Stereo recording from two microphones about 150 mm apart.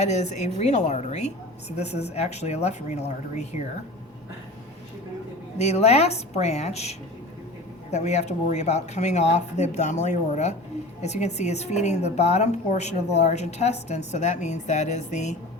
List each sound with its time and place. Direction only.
0.0 s a woman's voice: 50° left (ahead or behind)
5.5 s a woman's voice: 45° left (ahead or behind)